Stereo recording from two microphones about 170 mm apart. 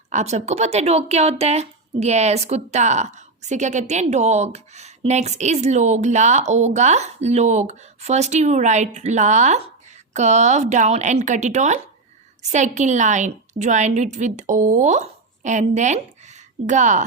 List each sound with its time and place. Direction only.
0.1 s a woman's voice: 45° right (ahead or behind)